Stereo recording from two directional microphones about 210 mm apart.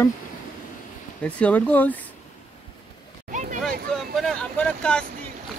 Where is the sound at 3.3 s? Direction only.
35° right (ahead or behind).